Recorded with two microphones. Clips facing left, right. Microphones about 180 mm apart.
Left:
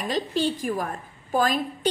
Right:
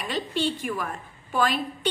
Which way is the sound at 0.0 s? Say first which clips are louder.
Left 2 dB; 40° left (ahead or behind).